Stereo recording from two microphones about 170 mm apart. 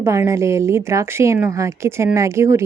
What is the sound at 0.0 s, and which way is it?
A woman's voice, 15° right (ahead or behind).